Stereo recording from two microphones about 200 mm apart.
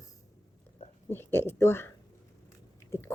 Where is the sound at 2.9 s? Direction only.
10° left (ahead or behind).